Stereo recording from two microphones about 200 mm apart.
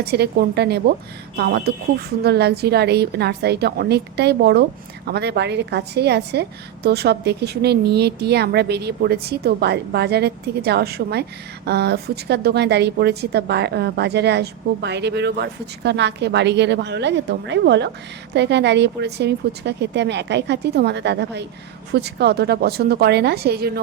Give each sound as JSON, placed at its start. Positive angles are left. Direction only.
{"t": 0.0, "sound": "a woman's voice", "side_deg": -55}